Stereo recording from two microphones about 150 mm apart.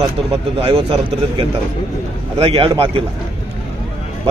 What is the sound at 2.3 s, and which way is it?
Speech, 40° right (ahead or behind).